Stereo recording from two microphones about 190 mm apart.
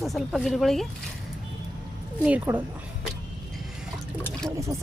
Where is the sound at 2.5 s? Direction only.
10° right (ahead or behind).